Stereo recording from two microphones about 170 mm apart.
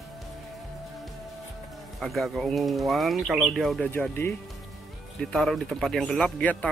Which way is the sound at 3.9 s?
15° left (ahead or behind).